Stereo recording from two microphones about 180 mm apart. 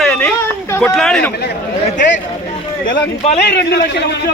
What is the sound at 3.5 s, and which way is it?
Speech, 70° left (ahead or behind).